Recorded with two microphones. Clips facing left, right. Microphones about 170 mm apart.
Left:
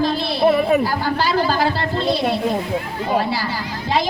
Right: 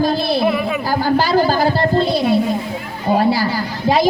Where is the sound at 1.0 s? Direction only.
40° right (ahead or behind).